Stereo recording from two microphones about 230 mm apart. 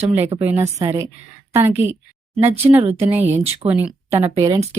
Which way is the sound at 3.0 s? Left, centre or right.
Centre.